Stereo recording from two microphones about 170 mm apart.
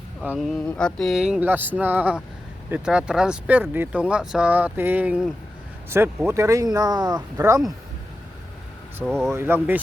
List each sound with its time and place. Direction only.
0.2 s a sound: centre (ahead or behind)
2.6 s speech: 5° right (ahead or behind)
9.3 s speech: 15° right (ahead or behind)